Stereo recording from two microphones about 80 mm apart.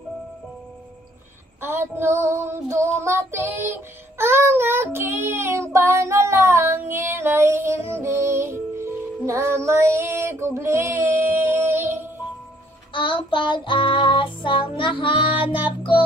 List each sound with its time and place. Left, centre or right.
1.6 s child singing: right
12.9 s child singing: left